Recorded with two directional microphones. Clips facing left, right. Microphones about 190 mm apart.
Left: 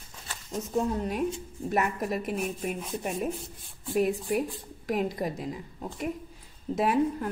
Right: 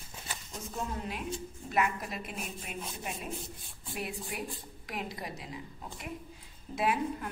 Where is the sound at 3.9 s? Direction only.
45° left (ahead or behind).